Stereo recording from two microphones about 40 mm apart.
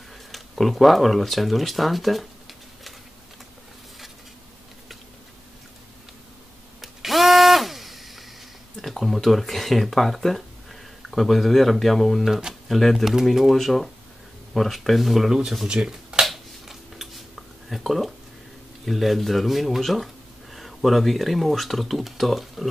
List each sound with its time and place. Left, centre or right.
0.3 s speech: centre
6.8 s a sound: centre
8.7 s speech: centre
15.6 s speech: right
15.9 s finger snapping: centre
16.3 s a sound: centre
18.9 s speech: centre